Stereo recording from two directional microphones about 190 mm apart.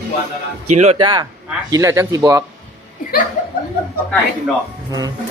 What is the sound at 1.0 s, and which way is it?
Speech, 20° right (ahead or behind).